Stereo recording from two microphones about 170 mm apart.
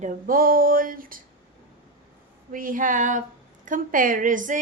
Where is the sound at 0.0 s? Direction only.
55° right (ahead or behind).